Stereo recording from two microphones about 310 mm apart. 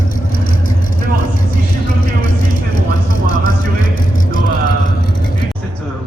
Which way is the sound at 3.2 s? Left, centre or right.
Left.